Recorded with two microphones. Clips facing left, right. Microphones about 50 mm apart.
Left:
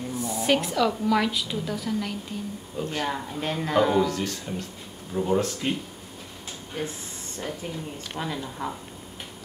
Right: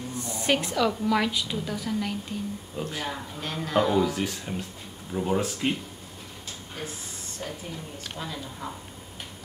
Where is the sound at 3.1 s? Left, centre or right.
Left.